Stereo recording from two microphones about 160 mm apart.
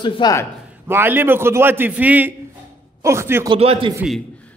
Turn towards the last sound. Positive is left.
turn(degrees=-35)  # may be behind; listen again after turning